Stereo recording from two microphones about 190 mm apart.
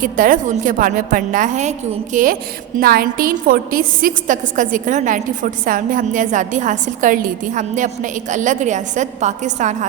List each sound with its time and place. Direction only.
0.0 s a woman's voice: 45° right (ahead or behind)